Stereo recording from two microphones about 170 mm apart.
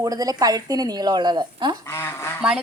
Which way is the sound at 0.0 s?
20° right (ahead or behind).